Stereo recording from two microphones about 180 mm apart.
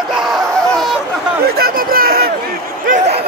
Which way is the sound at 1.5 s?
55° right (ahead or behind).